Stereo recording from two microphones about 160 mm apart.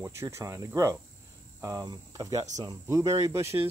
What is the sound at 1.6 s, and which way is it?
Speech, 20° right (ahead or behind).